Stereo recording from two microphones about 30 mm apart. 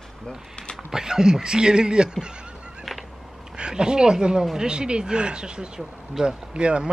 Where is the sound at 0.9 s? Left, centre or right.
Right.